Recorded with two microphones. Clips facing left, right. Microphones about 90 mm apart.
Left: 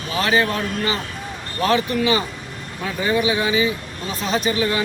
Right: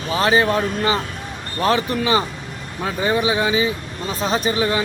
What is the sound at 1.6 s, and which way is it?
Speech, 35° right (ahead or behind).